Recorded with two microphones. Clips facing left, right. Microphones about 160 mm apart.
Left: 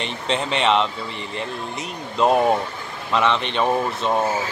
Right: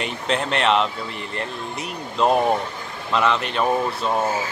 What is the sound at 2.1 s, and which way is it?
Speech, centre (ahead or behind).